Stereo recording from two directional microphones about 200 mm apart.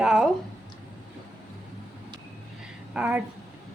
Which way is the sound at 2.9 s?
5° right (ahead or behind).